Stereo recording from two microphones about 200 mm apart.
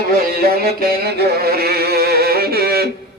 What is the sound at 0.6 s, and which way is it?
Music, 50° right (ahead or behind).